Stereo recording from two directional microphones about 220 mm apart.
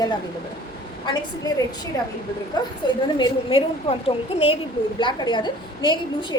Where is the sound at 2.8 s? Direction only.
20° left (ahead or behind).